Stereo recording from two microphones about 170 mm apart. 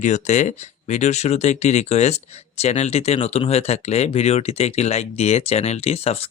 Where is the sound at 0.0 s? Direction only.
45° left (ahead or behind).